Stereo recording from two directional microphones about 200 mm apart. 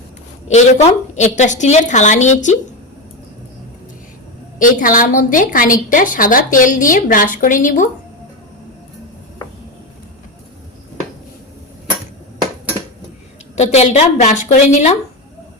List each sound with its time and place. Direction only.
0.4 s a woman's voice: 35° left (ahead or behind)
4.6 s a woman's voice: 40° left (ahead or behind)
13.6 s a woman's voice: 35° left (ahead or behind)